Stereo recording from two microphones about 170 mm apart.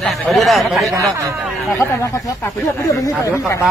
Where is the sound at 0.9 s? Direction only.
15° right (ahead or behind).